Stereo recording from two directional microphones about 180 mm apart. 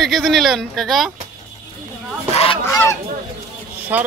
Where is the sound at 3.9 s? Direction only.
10° right (ahead or behind).